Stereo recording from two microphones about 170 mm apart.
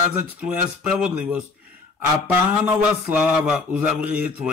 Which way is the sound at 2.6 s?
10° right (ahead or behind).